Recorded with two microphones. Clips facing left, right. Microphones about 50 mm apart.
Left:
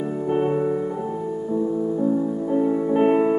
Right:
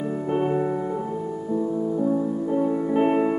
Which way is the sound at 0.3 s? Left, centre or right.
Centre.